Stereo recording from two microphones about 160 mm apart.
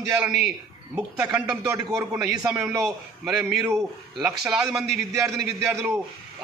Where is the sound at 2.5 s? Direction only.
20° right (ahead or behind).